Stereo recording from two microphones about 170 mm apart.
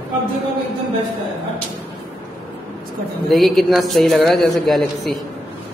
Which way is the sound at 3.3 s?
Centre (ahead or behind).